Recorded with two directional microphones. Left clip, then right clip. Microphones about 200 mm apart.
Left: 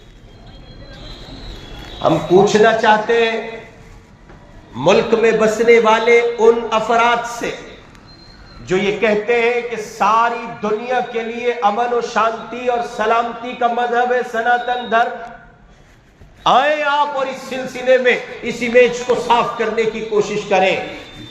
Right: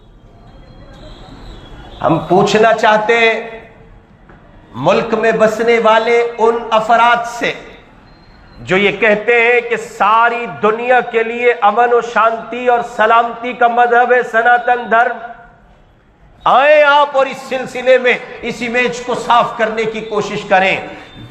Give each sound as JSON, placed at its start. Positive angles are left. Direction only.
{"t": 2.0, "sound": "a man's voice", "side_deg": -40}
{"t": 4.7, "sound": "a man's voice", "side_deg": -35}
{"t": 8.6, "sound": "a man's voice", "side_deg": -35}
{"t": 16.4, "sound": "a man's voice", "side_deg": -35}